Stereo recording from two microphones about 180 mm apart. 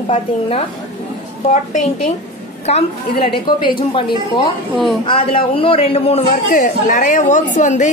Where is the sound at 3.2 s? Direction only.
25° left (ahead or behind).